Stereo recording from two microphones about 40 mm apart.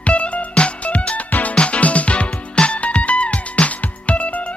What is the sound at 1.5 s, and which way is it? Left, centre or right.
Music, left.